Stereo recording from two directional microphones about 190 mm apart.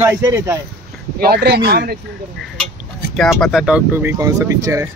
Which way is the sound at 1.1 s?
55° right (ahead or behind).